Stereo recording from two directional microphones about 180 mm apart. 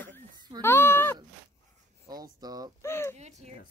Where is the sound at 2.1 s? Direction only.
20° right (ahead or behind).